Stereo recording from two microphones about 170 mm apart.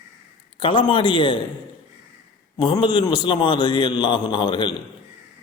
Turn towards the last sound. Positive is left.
turn(degrees=25)  # may be behind; listen again after turning